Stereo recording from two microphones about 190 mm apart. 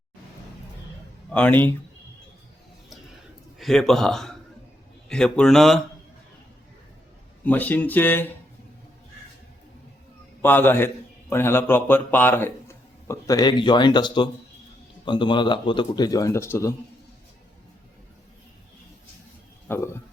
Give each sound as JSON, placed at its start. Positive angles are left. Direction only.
{"t": 1.3, "sound": "speech", "side_deg": 5}
{"t": 3.6, "sound": "speech", "side_deg": 0}
{"t": 7.4, "sound": "speech", "side_deg": 10}
{"t": 10.4, "sound": "a man's voice", "side_deg": 10}
{"t": 19.6, "sound": "speech", "side_deg": 15}